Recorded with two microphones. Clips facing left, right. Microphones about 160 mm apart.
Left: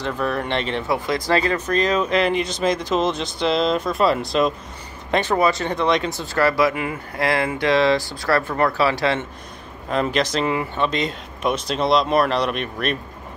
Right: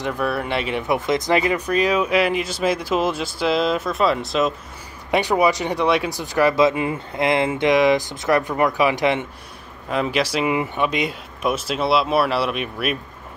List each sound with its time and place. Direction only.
0.0 s speech: 10° right (ahead or behind)
0.9 s speech: 20° right (ahead or behind); by 4.6 s centre (ahead or behind)
5.1 s speech: 10° right (ahead or behind)
9.8 s speech: 5° right (ahead or behind)